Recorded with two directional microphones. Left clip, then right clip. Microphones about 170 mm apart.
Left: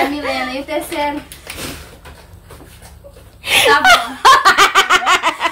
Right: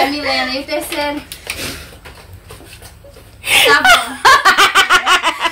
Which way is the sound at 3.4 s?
10° left (ahead or behind).